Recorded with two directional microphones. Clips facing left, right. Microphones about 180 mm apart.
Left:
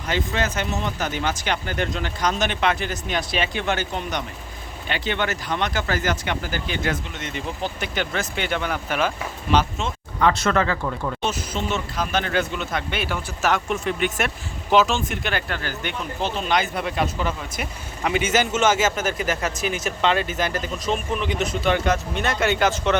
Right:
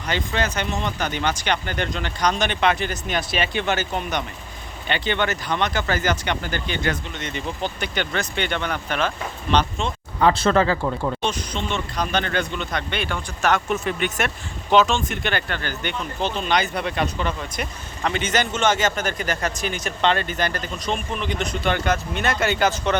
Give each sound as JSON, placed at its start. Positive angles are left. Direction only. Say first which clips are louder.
{"t": 0.1, "sound": "speech", "louder": "even", "side_deg": 0}
{"t": 10.2, "sound": "speech", "louder": "right 2 dB", "side_deg": -30}
{"t": 11.2, "sound": "speech", "louder": "even", "side_deg": 5}